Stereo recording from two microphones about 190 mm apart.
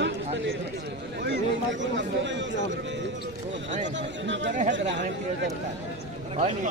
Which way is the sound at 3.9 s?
70° right (ahead or behind).